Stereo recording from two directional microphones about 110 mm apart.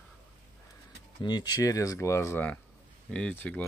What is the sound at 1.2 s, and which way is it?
Speech, 40° left (ahead or behind).